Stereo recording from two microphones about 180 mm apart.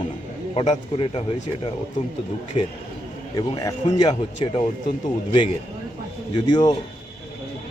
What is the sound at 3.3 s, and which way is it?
Speech, 20° left (ahead or behind).